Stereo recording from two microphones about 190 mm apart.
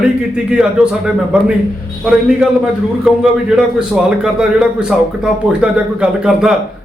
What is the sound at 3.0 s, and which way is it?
A man's voice, 5° right (ahead or behind).